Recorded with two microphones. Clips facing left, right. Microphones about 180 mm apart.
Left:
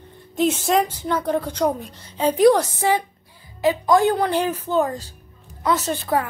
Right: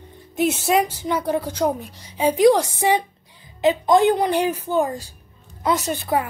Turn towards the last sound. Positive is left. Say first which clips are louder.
# even
turn(degrees=-10)  # may be behind; listen again after turning